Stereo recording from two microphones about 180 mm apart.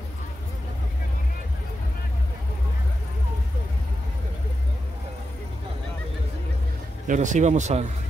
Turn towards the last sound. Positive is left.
turn(degrees=-40)  # may be behind; listen again after turning